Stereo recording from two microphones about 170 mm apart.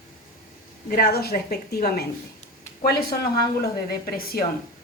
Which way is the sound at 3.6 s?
65° left (ahead or behind).